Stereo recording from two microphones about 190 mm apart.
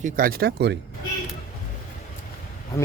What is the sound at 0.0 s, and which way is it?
Speech, 50° right (ahead or behind).